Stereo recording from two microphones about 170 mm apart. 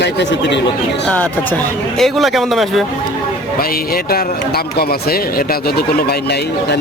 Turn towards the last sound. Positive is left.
turn(degrees=65)  # may be behind; listen again after turning